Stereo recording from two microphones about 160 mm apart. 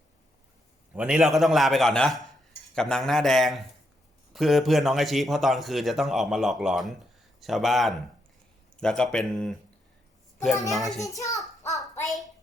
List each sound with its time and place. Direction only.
0.9 s a man's voice: 5° right (ahead or behind)
10.7 s a man's voice: centre (ahead or behind)
11.0 s a child's voice: 20° left (ahead or behind)